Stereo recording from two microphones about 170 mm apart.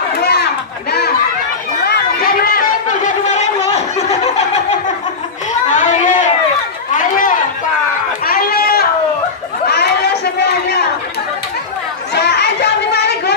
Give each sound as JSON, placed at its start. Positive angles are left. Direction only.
{"t": 0.2, "sound": "chatter", "side_deg": 70}
{"t": 1.8, "sound": "chatter", "side_deg": 70}
{"t": 5.7, "sound": "a sound", "side_deg": 45}
{"t": 7.0, "sound": "chatter", "side_deg": 50}
{"t": 8.3, "sound": "a sound", "side_deg": 65}
{"t": 9.7, "sound": "chatter", "side_deg": 75}
{"t": 12.1, "sound": "chatter", "side_deg": 80}